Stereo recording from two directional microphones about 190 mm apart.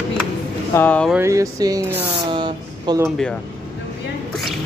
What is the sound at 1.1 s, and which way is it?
Speech, 15° right (ahead or behind).